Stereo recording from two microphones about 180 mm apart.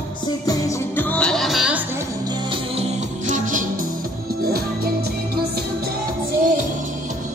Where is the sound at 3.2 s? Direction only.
45° right (ahead or behind).